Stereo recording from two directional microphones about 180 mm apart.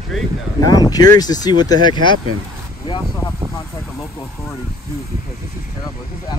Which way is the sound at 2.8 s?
20° left (ahead or behind).